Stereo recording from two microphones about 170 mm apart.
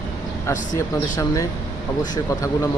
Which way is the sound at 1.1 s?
20° left (ahead or behind).